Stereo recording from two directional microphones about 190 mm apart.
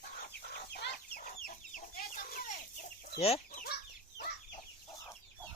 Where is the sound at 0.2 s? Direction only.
50° left (ahead or behind).